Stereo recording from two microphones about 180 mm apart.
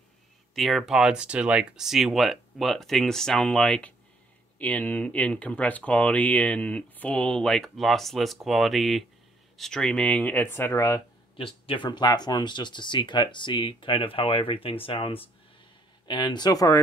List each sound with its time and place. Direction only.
0.6 s speech: centre (ahead or behind)
11.3 s speech: 30° left (ahead or behind)